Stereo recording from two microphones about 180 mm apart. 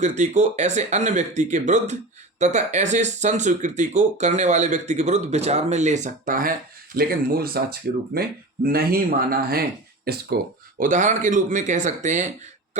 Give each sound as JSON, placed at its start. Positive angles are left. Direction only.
{"t": 0.0, "sound": "speech", "side_deg": -40}